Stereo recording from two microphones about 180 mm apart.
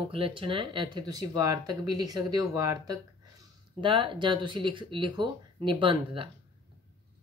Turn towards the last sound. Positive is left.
turn(degrees=-30)  # may be behind; listen again after turning